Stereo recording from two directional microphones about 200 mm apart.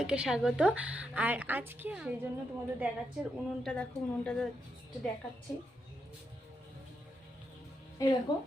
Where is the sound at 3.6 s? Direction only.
5° left (ahead or behind).